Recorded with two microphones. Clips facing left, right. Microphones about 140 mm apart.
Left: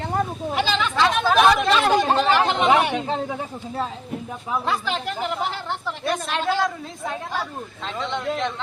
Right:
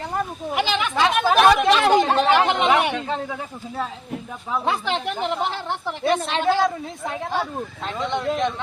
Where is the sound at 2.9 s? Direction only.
20° left (ahead or behind).